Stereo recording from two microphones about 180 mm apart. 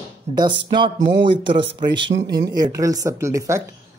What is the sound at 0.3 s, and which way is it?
Speech, 35° right (ahead or behind).